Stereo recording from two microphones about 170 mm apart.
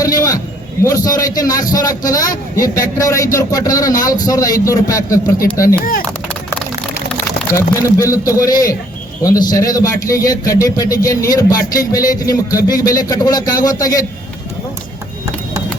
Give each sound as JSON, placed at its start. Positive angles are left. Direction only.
{"t": 0.0, "sound": "a sound", "side_deg": 20}
{"t": 0.9, "sound": "a man's voice", "side_deg": 20}
{"t": 7.5, "sound": "a man's voice", "side_deg": 20}